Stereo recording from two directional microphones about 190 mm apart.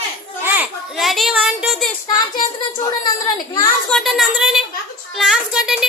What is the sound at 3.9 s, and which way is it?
A woman's voice, centre (ahead or behind).